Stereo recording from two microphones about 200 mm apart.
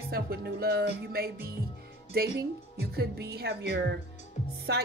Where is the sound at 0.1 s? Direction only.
50° right (ahead or behind).